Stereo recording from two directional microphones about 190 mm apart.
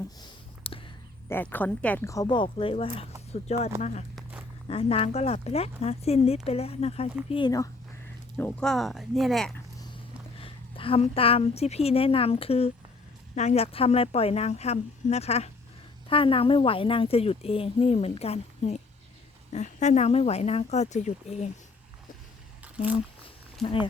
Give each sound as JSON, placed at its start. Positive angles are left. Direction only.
{"t": 0.2, "sound": "a sound", "side_deg": 30}
{"t": 1.3, "sound": "a woman's voice", "side_deg": 10}
{"t": 4.1, "sound": "a sound", "side_deg": -10}
{"t": 4.7, "sound": "a woman's voice", "side_deg": 30}
{"t": 8.4, "sound": "speech", "side_deg": 10}
{"t": 10.4, "sound": "a woman's voice", "side_deg": 30}